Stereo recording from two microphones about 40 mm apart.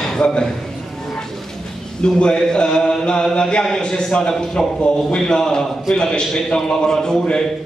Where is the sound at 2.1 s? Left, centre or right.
Centre.